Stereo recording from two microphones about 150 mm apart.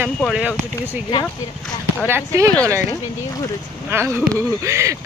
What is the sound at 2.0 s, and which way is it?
Speech, 20° right (ahead or behind).